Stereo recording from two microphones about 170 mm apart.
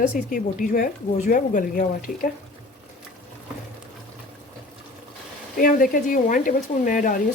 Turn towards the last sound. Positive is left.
turn(degrees=50)  # may be behind; listen again after turning